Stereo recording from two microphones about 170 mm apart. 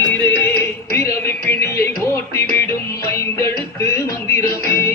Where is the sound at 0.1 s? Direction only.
10° left (ahead or behind).